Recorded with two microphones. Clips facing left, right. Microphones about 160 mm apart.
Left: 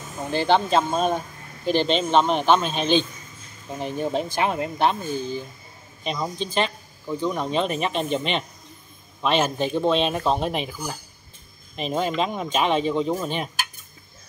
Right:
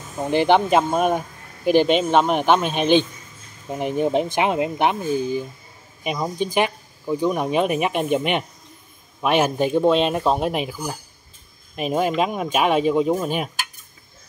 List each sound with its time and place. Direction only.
0.3 s speech: 15° right (ahead or behind)